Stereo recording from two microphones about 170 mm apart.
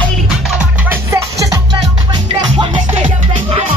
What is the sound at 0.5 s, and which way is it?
Music, 15° right (ahead or behind).